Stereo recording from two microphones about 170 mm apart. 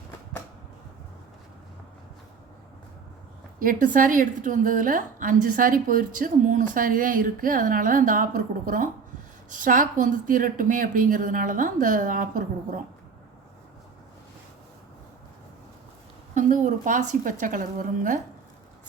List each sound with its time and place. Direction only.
3.6 s a woman's voice: 55° right (ahead or behind)
16.3 s a woman's voice: 50° right (ahead or behind)